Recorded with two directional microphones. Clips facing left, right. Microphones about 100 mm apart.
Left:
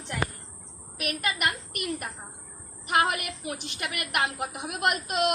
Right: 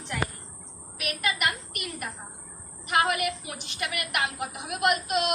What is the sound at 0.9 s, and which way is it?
A woman's voice, 40° left (ahead or behind).